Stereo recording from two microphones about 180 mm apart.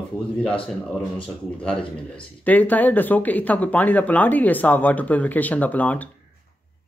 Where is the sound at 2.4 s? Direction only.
10° left (ahead or behind).